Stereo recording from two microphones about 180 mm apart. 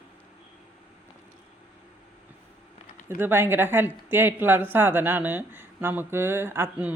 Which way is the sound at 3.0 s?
15° right (ahead or behind).